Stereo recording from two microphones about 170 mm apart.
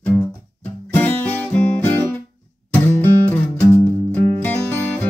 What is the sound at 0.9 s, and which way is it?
Music, 10° left (ahead or behind).